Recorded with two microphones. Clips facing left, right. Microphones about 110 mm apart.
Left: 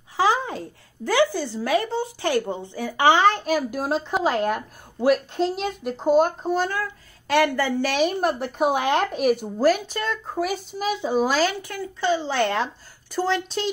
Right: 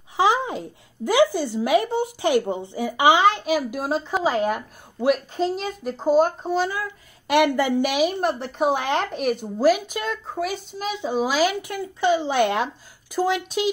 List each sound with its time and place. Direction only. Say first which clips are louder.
0.2 s speech: right 1 dB; 20° right (ahead or behind)
3.1 s speech: even; 5° right (ahead or behind)
6.8 s speech: left 1 dB; 15° right (ahead or behind)
8.0 s speech: even; centre (ahead or behind)
10.2 s speech: left 1 dB; centre (ahead or behind)
11.6 s speech: right 3 dB; 20° right (ahead or behind)